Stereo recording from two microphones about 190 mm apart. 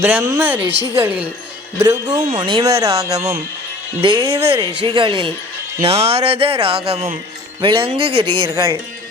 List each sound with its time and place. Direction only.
0.0 s speech: 10° right (ahead or behind)